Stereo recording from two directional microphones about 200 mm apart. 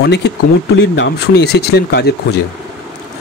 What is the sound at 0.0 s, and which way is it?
Speech, 55° left (ahead or behind).